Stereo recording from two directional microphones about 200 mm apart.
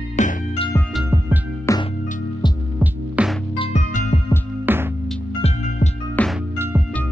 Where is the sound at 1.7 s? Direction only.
15° left (ahead or behind).